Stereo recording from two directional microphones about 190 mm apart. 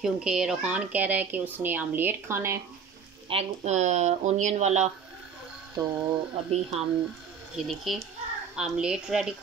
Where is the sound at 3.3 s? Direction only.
35° right (ahead or behind).